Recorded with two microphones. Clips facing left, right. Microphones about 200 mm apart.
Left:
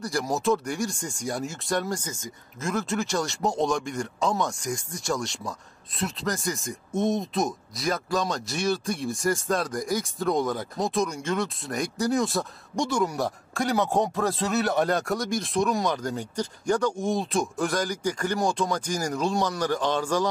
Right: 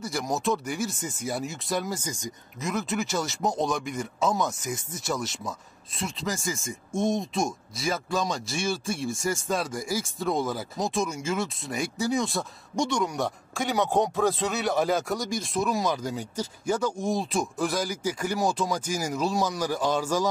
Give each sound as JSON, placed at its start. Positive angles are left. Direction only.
{"t": 0.0, "sound": "speech", "side_deg": 0}
{"t": 2.6, "sound": "speech", "side_deg": 0}